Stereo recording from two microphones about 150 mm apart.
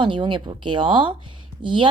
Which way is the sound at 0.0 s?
35° right (ahead or behind).